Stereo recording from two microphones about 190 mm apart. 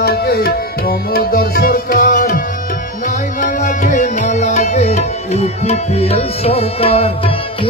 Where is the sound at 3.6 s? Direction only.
40° left (ahead or behind).